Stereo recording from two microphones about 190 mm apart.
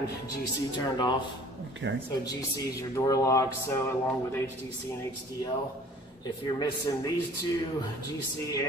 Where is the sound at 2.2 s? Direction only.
20° left (ahead or behind).